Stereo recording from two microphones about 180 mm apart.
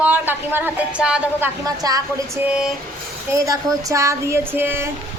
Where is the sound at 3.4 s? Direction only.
15° right (ahead or behind).